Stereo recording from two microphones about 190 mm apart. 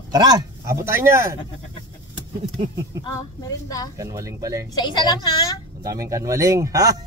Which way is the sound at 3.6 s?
20° left (ahead or behind).